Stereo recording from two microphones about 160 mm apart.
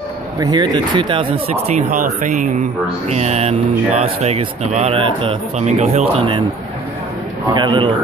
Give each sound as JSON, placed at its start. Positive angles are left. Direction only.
{"t": 0.4, "sound": "speech", "side_deg": -25}
{"t": 5.7, "sound": "speech", "side_deg": -45}
{"t": 7.4, "sound": "a man's voice", "side_deg": -30}